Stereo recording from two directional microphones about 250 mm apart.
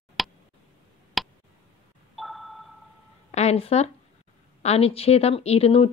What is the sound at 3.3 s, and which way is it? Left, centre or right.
A woman's voice, left.